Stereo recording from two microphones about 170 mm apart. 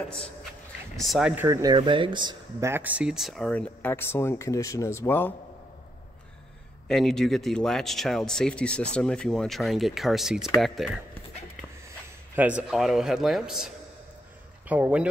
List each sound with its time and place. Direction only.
0.9 s speech: centre (ahead or behind)
1.3 s speech: 15° right (ahead or behind)
2.6 s speech: 10° right (ahead or behind); by 5.3 s 10° left (ahead or behind)
6.9 s speech: centre (ahead or behind)
12.4 s speech: 10° right (ahead or behind)
14.7 s speech: 10° right (ahead or behind)